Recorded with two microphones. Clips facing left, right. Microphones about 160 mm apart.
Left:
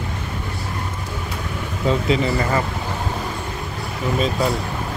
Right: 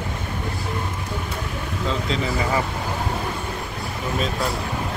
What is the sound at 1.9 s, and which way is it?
Speech, 5° left (ahead or behind).